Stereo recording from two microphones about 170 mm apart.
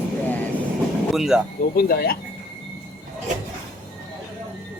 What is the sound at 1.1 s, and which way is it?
Speech, 5° right (ahead or behind).